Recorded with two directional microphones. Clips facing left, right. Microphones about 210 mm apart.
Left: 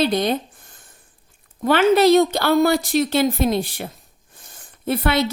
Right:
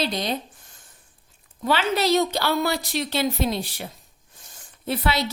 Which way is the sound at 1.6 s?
55° left (ahead or behind).